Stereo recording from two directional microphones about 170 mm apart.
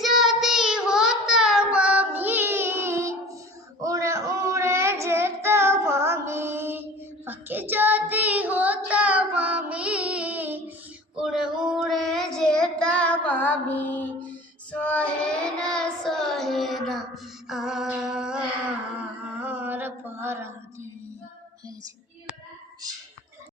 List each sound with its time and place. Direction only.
0.0 s child singing: centre (ahead or behind)
9.3 s music: 10° right (ahead or behind)
11.2 s child singing: 5° right (ahead or behind)
17.5 s music: centre (ahead or behind)
19.4 s mantra: 10° right (ahead or behind)